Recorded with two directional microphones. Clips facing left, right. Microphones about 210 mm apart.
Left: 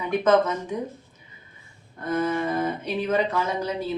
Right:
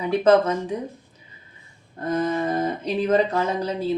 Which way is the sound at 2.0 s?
35° right (ahead or behind).